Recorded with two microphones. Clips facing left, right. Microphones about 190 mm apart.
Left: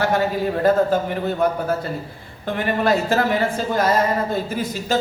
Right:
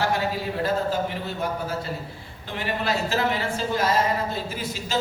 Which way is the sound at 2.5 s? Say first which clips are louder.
Left 8 dB; 50° left (ahead or behind).